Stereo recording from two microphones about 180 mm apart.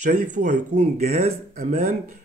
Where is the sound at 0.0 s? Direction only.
45° right (ahead or behind).